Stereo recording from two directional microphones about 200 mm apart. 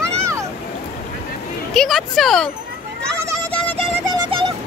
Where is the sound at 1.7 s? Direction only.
Centre (ahead or behind).